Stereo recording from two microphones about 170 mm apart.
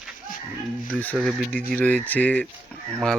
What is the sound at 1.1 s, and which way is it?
Speech, centre (ahead or behind).